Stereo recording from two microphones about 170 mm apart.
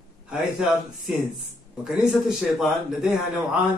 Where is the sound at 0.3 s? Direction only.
5° right (ahead or behind).